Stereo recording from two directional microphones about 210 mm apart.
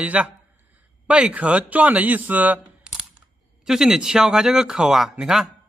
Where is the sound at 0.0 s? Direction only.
5° right (ahead or behind).